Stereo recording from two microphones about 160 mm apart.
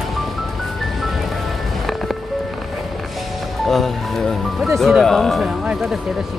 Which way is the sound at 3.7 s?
Centre (ahead or behind).